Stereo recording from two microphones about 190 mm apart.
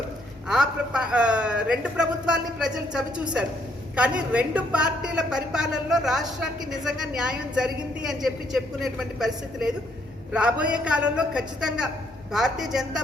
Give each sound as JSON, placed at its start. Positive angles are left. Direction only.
{"t": 0.4, "sound": "a woman's voice", "side_deg": -5}